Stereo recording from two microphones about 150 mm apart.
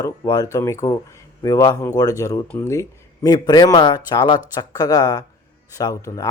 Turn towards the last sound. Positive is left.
turn(degrees=20)  # may be behind; listen again after turning